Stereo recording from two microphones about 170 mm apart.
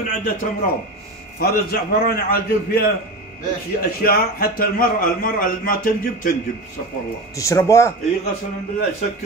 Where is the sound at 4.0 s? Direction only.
60° left (ahead or behind).